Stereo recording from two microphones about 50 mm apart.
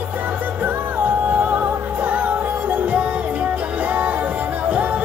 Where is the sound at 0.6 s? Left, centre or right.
Right.